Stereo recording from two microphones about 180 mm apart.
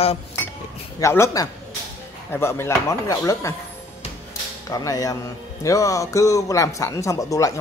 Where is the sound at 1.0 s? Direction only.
15° left (ahead or behind).